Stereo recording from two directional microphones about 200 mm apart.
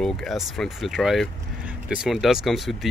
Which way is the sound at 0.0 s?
Centre (ahead or behind).